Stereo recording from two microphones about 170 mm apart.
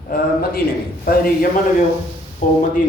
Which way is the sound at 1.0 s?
55° left (ahead or behind).